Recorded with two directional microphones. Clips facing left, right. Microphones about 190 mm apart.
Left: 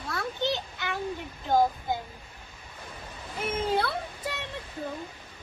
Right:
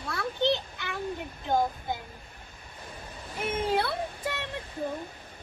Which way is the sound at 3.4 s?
20° right (ahead or behind).